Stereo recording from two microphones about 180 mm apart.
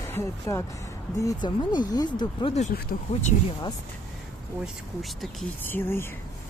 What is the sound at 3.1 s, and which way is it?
Speech, 40° left (ahead or behind).